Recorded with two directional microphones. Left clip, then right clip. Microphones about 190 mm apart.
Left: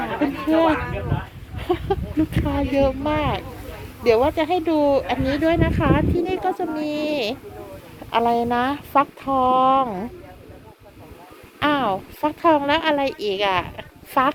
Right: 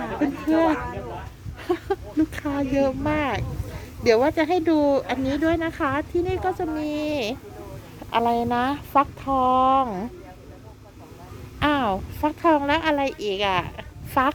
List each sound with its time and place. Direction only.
0.0 s speech: centre (ahead or behind); by 5.1 s 15° right (ahead or behind)
5.2 s speech: centre (ahead or behind)
11.6 s speech: 5° right (ahead or behind)